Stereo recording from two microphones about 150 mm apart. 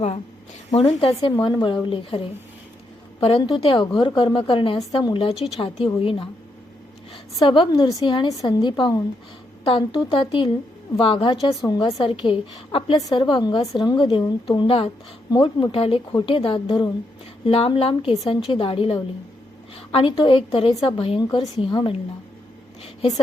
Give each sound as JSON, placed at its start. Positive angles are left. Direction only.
{"t": 0.7, "sound": "speech", "side_deg": 35}
{"t": 7.3, "sound": "speech", "side_deg": 35}
{"t": 13.0, "sound": "a woman's voice", "side_deg": 25}